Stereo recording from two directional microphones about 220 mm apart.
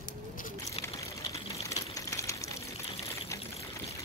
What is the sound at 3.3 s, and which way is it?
Pour, 15° left (ahead or behind).